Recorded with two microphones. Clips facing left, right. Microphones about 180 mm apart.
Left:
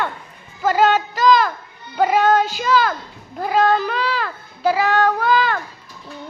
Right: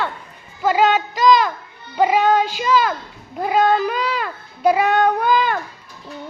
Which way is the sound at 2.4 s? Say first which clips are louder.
Even; 40° left (ahead or behind).